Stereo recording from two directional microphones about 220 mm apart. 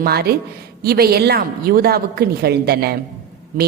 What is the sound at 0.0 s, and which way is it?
A woman's voice, 45° right (ahead or behind).